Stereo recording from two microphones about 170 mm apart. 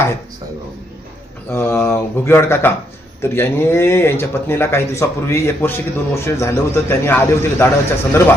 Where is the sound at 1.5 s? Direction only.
15° left (ahead or behind).